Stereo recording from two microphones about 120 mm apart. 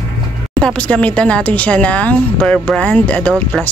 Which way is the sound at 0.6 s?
10° left (ahead or behind).